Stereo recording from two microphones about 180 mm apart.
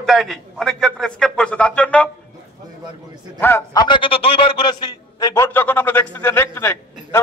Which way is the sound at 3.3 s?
15° left (ahead or behind).